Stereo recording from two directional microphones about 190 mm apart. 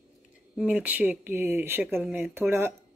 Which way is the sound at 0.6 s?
5° right (ahead or behind).